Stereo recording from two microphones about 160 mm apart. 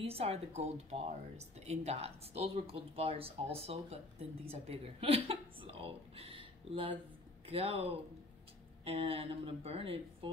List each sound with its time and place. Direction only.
0.0 s speech: 40° right (ahead or behind)
8.8 s speech: 35° right (ahead or behind)